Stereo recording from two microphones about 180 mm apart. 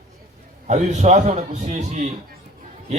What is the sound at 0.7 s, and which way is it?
A man's voice, 40° right (ahead or behind).